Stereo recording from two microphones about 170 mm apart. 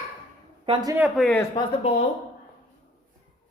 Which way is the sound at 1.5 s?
40° left (ahead or behind).